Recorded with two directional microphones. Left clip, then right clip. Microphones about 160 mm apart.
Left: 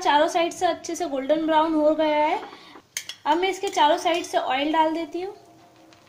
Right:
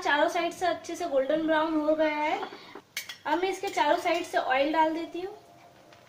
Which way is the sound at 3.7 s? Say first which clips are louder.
Left 6 dB; 40° left (ahead or behind).